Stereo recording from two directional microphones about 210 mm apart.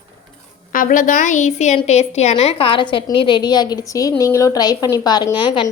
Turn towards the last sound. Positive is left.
turn(degrees=20)  # may be behind; listen again after turning